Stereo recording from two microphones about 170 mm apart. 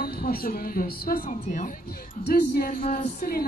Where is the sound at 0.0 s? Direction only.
65° left (ahead or behind).